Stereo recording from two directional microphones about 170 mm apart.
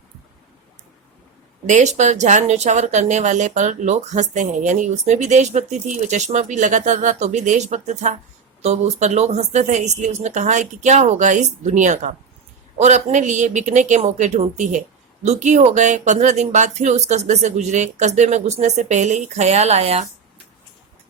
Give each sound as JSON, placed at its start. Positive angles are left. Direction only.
{"t": 1.6, "sound": "speech", "side_deg": -45}